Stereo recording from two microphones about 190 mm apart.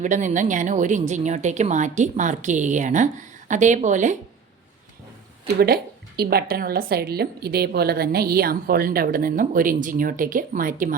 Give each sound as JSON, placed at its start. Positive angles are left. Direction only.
{"t": 0.0, "sound": "a woman's voice", "side_deg": -40}
{"t": 5.5, "sound": "a woman's voice", "side_deg": -55}